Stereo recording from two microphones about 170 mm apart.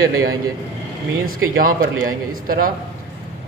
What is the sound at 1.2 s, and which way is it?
A man's voice, 55° right (ahead or behind).